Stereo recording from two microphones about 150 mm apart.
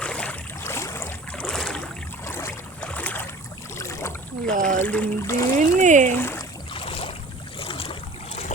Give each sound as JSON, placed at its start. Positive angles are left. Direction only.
{"t": 0.0, "sound": "boat", "side_deg": 5}
{"t": 0.6, "sound": "boat", "side_deg": 20}
{"t": 2.2, "sound": "boat", "side_deg": 15}
{"t": 4.5, "sound": "speech", "side_deg": -65}
{"t": 4.8, "sound": "speech", "side_deg": 10}
{"t": 5.5, "sound": "a sound", "side_deg": -55}
{"t": 6.1, "sound": "speech", "side_deg": 15}
{"t": 6.7, "sound": "boat", "side_deg": 40}